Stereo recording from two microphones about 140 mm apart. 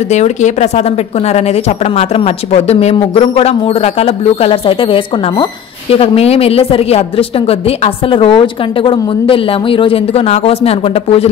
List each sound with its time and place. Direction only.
0.1 s speech: 55° left (ahead or behind)